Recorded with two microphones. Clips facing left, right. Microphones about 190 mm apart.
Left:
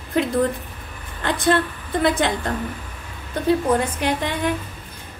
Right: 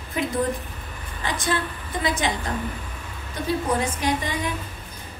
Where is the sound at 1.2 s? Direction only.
60° left (ahead or behind).